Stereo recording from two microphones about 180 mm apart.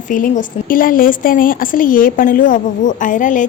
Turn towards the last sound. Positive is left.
turn(degrees=45)  # may be behind; listen again after turning